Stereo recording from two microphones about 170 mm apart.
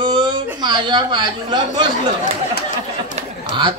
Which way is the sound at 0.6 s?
25° right (ahead or behind).